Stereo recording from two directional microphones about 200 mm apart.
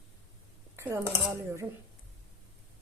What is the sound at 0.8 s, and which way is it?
Speech, 10° right (ahead or behind).